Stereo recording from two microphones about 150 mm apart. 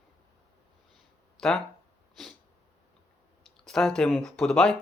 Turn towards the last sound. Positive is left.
turn(degrees=5)  # may be behind; listen again after turning